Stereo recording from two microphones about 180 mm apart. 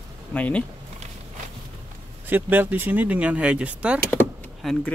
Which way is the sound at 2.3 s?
10° right (ahead or behind).